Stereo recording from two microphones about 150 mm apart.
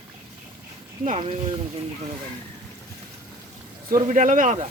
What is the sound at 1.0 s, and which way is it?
Speech, 45° right (ahead or behind).